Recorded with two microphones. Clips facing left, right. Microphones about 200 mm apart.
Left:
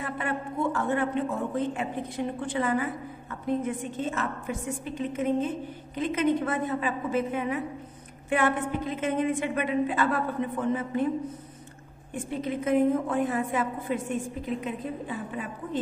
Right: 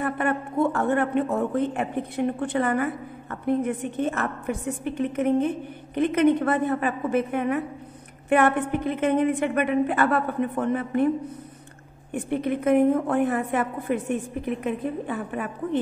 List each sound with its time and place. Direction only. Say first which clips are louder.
0.0 s a man's voice: right 6 dB; 55° right (ahead or behind)
12.1 s a man's voice: right 5 dB; 60° right (ahead or behind)